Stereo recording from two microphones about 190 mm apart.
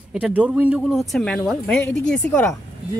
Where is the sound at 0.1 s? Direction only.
5° right (ahead or behind).